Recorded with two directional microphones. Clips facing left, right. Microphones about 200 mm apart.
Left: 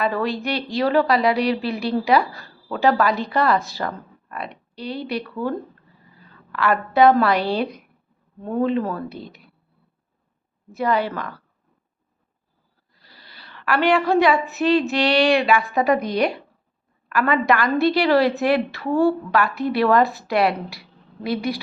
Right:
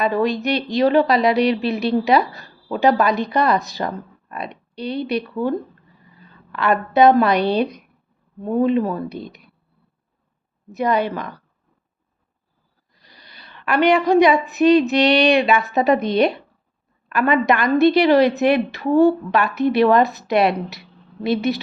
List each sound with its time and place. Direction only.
0.0 s a woman's voice: 20° right (ahead or behind)
10.7 s a woman's voice: 20° right (ahead or behind)
12.9 s a woman's voice: 20° right (ahead or behind)